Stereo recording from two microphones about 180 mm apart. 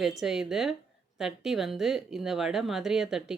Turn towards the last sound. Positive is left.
turn(degrees=0)  # may be behind; listen again after turning